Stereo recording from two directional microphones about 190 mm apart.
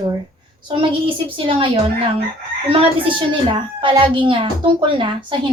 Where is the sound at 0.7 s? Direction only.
25° right (ahead or behind).